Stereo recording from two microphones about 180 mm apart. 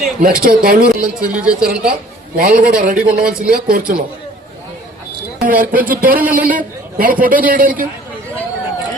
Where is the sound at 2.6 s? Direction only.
55° right (ahead or behind).